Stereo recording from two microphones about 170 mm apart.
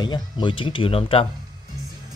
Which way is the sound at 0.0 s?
25° left (ahead or behind).